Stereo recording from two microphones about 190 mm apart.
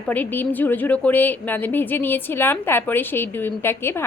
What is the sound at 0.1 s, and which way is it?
Speech, 10° left (ahead or behind).